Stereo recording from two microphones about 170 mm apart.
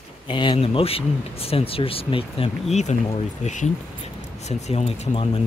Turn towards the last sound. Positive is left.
turn(degrees=40)  # may be behind; listen again after turning